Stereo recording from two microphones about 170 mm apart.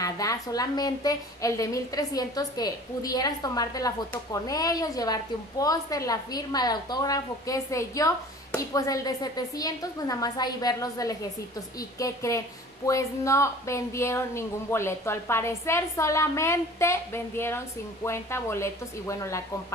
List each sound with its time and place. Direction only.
0.0 s a woman's voice: 20° left (ahead or behind)